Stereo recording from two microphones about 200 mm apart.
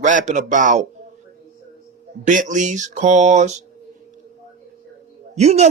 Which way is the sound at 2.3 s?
40° right (ahead or behind).